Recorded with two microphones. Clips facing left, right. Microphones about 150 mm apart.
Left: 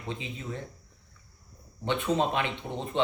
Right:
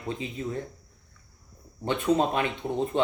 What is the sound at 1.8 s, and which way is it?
Speech, 40° right (ahead or behind).